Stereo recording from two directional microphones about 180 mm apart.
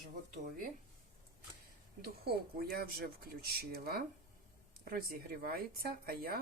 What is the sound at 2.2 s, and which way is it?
Speech, 55° right (ahead or behind).